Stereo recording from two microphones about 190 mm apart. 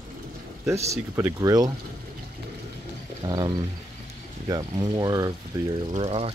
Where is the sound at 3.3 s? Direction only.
20° right (ahead or behind).